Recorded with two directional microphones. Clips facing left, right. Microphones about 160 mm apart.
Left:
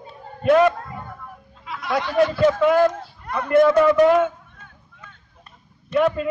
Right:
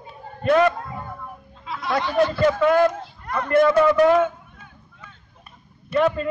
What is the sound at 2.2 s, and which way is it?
A man's voice, centre (ahead or behind).